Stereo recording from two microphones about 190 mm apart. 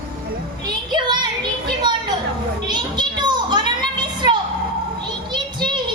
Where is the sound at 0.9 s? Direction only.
25° right (ahead or behind).